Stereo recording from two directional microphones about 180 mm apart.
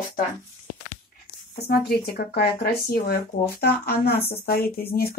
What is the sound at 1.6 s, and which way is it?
Speech, 60° left (ahead or behind).